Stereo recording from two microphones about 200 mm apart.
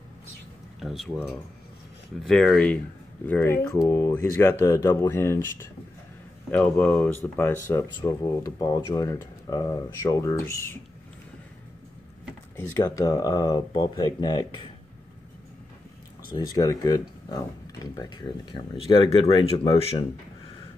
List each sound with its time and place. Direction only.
0.7 s speech: centre (ahead or behind)
12.5 s speech: 15° left (ahead or behind)
16.3 s speech: 20° left (ahead or behind)